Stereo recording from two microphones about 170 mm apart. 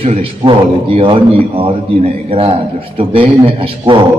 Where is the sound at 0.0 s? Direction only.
35° right (ahead or behind).